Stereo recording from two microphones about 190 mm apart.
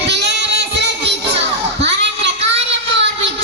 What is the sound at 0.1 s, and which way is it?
Child singing, 60° right (ahead or behind).